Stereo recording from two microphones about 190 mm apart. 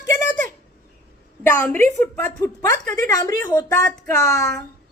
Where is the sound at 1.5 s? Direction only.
10° left (ahead or behind).